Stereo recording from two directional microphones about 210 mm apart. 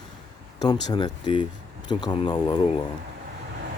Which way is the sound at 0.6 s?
20° left (ahead or behind).